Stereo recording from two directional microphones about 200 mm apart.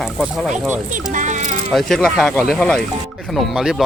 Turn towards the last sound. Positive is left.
turn(degrees=0)  # may be behind; listen again after turning